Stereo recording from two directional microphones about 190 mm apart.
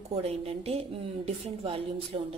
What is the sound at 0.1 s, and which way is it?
A woman's voice, 30° right (ahead or behind).